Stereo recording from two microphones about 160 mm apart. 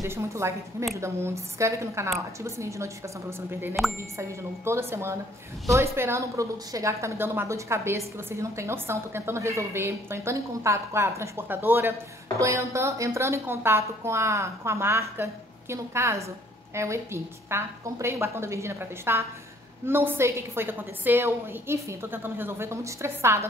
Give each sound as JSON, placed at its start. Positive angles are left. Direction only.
{"t": 0.0, "sound": "a woman's voice", "side_deg": -15}